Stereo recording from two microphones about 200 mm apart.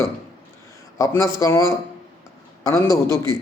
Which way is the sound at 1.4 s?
15° left (ahead or behind).